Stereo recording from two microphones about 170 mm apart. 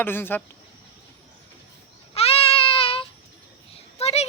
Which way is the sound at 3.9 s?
40° left (ahead or behind).